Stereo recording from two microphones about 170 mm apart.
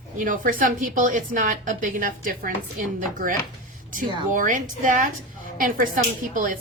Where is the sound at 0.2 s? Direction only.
50° right (ahead or behind).